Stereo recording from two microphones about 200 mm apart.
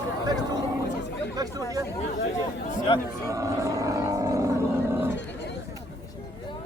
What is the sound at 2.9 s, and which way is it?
Speech, 25° left (ahead or behind).